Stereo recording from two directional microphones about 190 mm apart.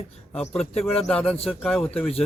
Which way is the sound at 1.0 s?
5° left (ahead or behind).